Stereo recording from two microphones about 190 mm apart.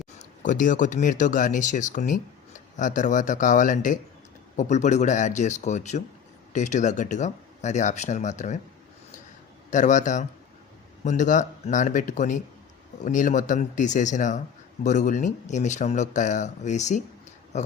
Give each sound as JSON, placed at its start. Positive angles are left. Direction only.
{"t": 0.2, "sound": "speech", "side_deg": 45}
{"t": 9.6, "sound": "speech", "side_deg": 40}